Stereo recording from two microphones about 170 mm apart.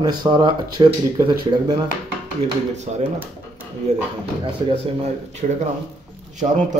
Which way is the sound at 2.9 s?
40° right (ahead or behind).